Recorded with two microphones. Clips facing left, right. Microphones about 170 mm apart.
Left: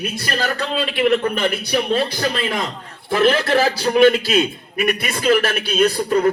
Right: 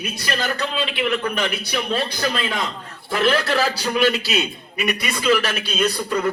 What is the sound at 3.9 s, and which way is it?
A man's voice, 50° left (ahead or behind).